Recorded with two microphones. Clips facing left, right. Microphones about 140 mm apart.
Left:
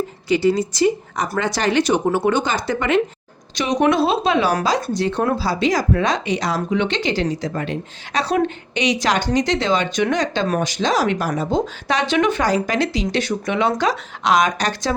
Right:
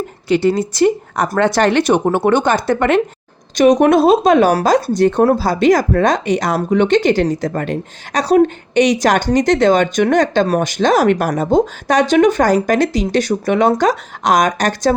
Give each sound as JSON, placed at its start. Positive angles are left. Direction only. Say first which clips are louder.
{"t": 0.3, "sound": "speech", "louder": "right 3 dB", "side_deg": -60}